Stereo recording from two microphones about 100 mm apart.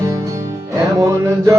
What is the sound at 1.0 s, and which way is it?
Music, 30° right (ahead or behind).